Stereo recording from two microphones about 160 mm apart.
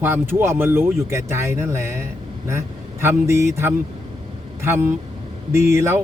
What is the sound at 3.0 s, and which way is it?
Speech, 15° right (ahead or behind).